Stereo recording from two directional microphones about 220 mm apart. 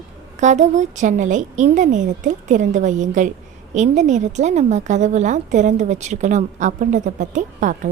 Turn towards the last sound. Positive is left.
turn(degrees=-35)  # may be behind; listen again after turning